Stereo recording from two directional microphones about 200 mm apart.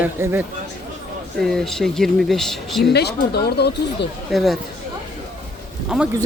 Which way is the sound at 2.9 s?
55° left (ahead or behind).